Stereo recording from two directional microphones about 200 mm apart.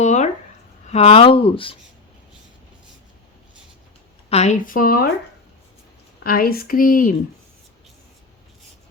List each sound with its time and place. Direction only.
0.0 s a sound: 35° left (ahead or behind)
0.9 s speech: 30° left (ahead or behind)
4.3 s speech: 35° left (ahead or behind)
6.2 s speech: 50° left (ahead or behind)